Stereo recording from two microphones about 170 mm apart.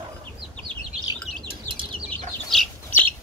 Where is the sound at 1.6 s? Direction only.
30° right (ahead or behind).